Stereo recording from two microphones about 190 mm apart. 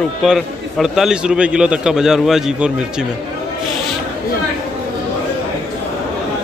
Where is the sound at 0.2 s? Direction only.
Centre (ahead or behind).